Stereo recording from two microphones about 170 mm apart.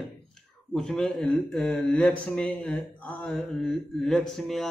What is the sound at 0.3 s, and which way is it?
Speech, 5° left (ahead or behind).